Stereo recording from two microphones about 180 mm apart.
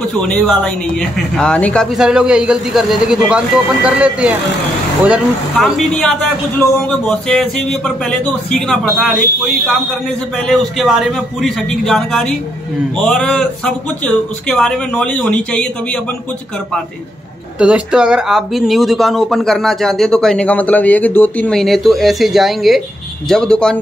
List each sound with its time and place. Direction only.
0.1 s speech: 5° left (ahead or behind)
7.1 s speech: 5° left (ahead or behind)
10.3 s speech: centre (ahead or behind)
17.6 s speech: 5° right (ahead or behind)